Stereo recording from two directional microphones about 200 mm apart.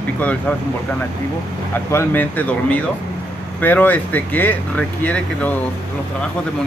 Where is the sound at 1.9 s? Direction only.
10° left (ahead or behind).